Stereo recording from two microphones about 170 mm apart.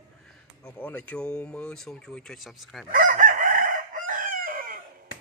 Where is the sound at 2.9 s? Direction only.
50° right (ahead or behind).